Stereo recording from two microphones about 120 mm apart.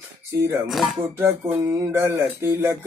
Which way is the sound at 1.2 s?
20° right (ahead or behind).